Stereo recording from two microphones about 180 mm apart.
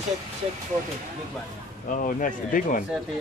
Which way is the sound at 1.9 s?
45° left (ahead or behind).